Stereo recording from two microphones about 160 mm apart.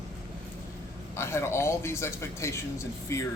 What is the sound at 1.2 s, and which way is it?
A man's voice, 15° left (ahead or behind).